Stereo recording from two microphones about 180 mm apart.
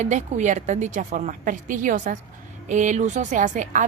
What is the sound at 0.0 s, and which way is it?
A woman's voice, 40° right (ahead or behind).